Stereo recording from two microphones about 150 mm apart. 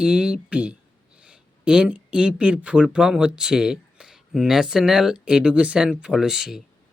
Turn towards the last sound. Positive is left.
turn(degrees=-5)  # may be behind; listen again after turning